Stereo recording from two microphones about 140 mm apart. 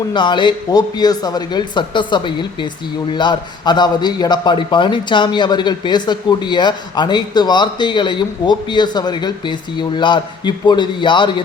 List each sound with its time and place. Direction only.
0.1 s a man's voice: 35° left (ahead or behind)